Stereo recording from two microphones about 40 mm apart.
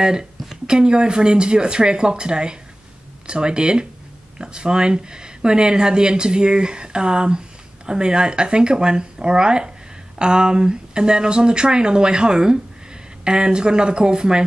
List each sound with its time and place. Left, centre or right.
0.0 s speech: centre